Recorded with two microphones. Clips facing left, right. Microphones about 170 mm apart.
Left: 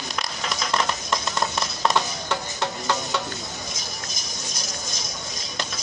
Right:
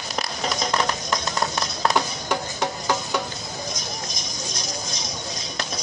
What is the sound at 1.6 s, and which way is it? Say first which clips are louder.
Music: even; centre (ahead or behind).